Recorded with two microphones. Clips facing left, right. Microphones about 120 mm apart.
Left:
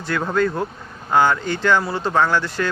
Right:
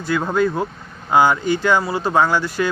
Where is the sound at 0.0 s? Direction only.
10° right (ahead or behind).